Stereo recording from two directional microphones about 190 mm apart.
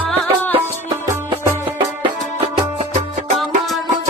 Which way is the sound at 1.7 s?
25° right (ahead or behind).